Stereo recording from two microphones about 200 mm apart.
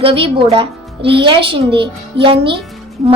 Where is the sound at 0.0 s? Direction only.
30° right (ahead or behind).